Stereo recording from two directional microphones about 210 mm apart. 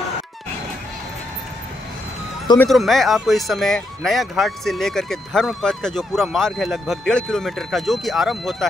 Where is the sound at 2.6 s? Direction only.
Centre (ahead or behind).